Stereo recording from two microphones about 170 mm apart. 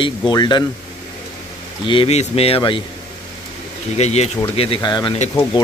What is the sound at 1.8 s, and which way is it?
Speech, 30° left (ahead or behind).